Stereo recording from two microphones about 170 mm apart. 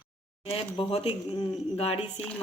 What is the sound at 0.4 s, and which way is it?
Speech, 35° left (ahead or behind).